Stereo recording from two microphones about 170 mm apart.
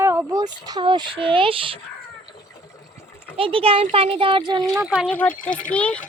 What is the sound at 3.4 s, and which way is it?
A child's voice, 35° right (ahead or behind).